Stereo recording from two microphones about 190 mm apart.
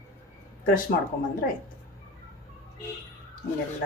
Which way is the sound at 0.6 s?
50° left (ahead or behind).